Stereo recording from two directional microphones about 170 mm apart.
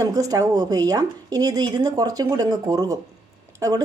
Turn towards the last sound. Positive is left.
turn(degrees=-20)  # may be behind; listen again after turning